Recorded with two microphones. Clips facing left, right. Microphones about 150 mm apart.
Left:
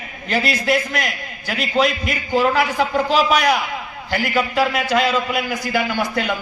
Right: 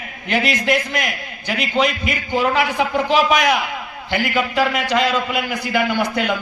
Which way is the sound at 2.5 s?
40° left (ahead or behind).